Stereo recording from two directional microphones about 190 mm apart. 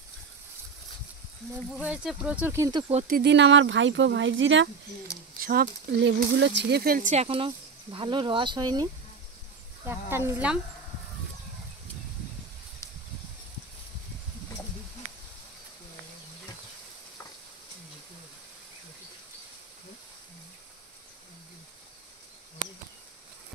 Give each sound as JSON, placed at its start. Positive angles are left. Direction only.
{"t": 1.7, "sound": "speech", "side_deg": -5}
{"t": 2.9, "sound": "speech", "side_deg": -35}
{"t": 3.2, "sound": "speech", "side_deg": -65}
{"t": 5.4, "sound": "speech", "side_deg": -50}
{"t": 9.8, "sound": "speech", "side_deg": -10}